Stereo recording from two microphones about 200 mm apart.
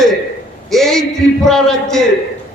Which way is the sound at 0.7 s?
Centre (ahead or behind).